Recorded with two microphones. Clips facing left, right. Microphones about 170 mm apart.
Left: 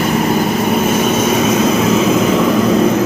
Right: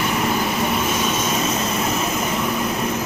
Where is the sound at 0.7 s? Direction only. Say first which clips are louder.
Left 8 dB; 50° left (ahead or behind); by 2.8 s 90° left.